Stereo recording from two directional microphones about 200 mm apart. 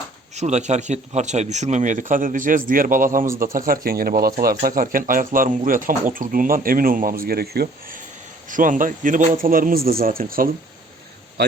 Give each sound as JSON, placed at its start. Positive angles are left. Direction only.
{"t": 0.3, "sound": "speech", "side_deg": -35}